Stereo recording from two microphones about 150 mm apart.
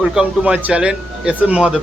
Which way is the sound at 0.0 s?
5° right (ahead or behind).